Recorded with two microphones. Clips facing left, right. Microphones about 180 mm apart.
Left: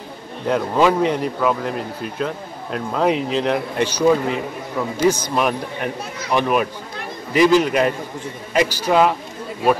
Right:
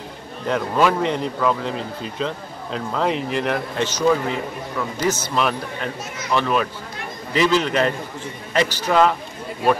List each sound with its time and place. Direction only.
0.5 s speech: 15° left (ahead or behind)